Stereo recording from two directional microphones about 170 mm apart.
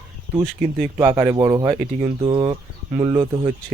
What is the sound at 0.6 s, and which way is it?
Speech, 5° right (ahead or behind).